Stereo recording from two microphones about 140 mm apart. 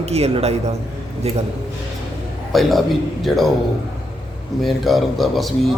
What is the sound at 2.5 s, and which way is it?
Speech, centre (ahead or behind).